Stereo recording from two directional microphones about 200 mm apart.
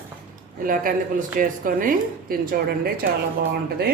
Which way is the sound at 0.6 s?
45° right (ahead or behind).